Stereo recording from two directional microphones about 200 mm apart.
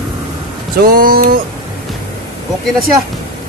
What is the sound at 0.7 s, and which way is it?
Speech, 45° right (ahead or behind).